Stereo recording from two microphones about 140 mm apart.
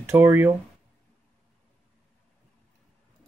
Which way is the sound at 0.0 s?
15° right (ahead or behind).